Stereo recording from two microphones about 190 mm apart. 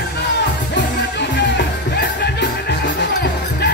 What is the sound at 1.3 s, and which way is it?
Music, 65° left (ahead or behind).